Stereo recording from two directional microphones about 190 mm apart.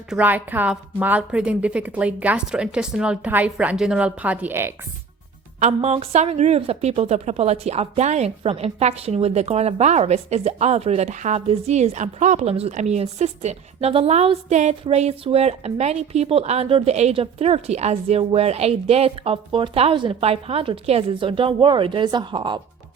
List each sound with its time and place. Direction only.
0.1 s a woman's voice: 10° right (ahead or behind)
5.5 s a woman's voice: 35° right (ahead or behind)